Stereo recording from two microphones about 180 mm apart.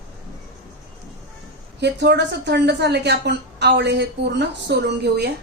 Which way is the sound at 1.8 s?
70° right (ahead or behind).